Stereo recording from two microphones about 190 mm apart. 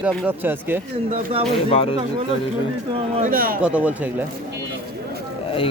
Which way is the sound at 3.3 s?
50° right (ahead or behind).